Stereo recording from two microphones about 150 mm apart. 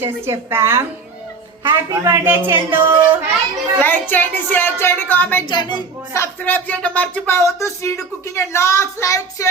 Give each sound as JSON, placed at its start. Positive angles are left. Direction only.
{"t": 0.0, "sound": "a woman's voice", "side_deg": -15}
{"t": 3.8, "sound": "a woman's voice", "side_deg": 15}
{"t": 5.5, "sound": "a woman's voice", "side_deg": 30}
{"t": 6.1, "sound": "speech", "side_deg": 15}